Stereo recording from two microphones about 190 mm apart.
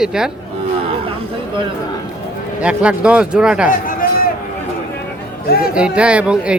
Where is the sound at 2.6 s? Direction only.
5° right (ahead or behind).